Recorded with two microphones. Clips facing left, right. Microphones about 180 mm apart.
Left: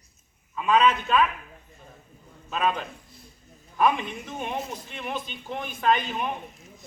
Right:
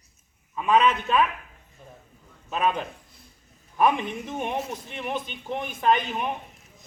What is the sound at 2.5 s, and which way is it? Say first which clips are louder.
A man's voice: right 1 dB; 15° right (ahead or behind).